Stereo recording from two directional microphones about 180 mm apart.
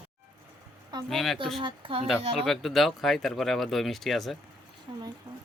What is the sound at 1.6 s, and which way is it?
Speech, 30° right (ahead or behind).